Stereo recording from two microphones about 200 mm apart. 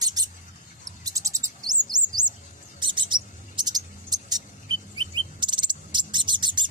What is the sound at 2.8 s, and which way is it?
Mouse, 25° right (ahead or behind).